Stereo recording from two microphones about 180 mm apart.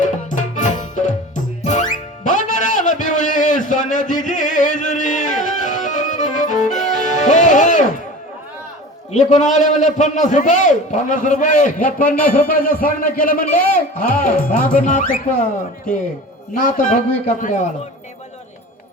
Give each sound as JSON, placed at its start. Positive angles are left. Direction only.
{"t": 0.0, "sound": "music", "side_deg": 45}
{"t": 9.1, "sound": "a man's voice", "side_deg": 45}
{"t": 16.6, "sound": "a man's voice", "side_deg": 50}